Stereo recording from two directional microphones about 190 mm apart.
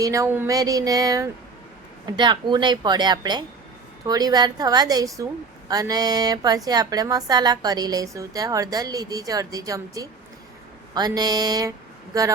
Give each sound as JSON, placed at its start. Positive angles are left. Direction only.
{"t": 0.0, "sound": "a woman's voice", "side_deg": -15}